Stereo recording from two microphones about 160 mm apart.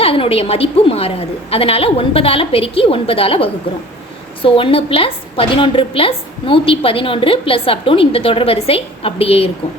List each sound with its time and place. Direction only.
0.0 s a woman's voice: 35° left (ahead or behind)